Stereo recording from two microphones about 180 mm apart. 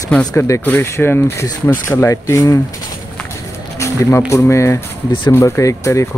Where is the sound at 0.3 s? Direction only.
15° left (ahead or behind).